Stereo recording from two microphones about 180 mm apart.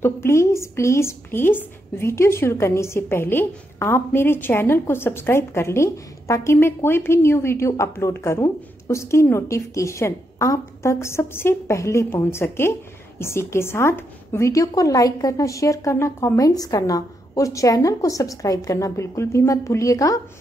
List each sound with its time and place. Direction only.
0.0 s a woman's voice: 15° left (ahead or behind)